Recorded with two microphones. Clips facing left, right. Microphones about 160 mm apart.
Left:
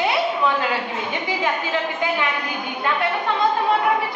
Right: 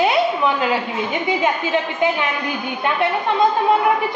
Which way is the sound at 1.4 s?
20° right (ahead or behind).